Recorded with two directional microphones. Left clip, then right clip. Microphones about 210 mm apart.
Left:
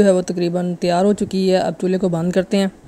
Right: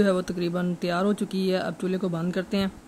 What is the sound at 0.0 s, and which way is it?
A woman's voice, 20° left (ahead or behind).